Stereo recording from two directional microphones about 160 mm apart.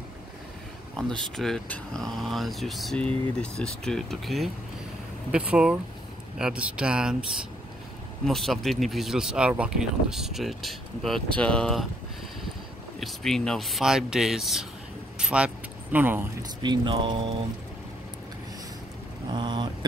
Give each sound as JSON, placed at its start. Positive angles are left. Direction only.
{"t": 0.9, "sound": "speech", "side_deg": 5}
{"t": 8.3, "sound": "speech", "side_deg": 0}
{"t": 13.0, "sound": "speech", "side_deg": 0}
{"t": 15.1, "sound": "vehicle", "side_deg": -5}
{"t": 16.6, "sound": "speech", "side_deg": -30}
{"t": 19.3, "sound": "a sound", "side_deg": -30}